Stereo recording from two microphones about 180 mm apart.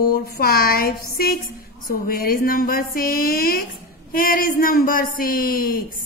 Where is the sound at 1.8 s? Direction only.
55° left (ahead or behind).